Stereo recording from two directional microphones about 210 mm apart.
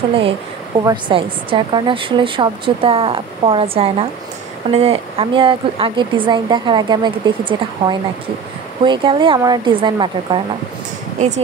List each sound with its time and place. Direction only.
0.7 s speech: 25° right (ahead or behind)
11.1 s speech: 35° right (ahead or behind)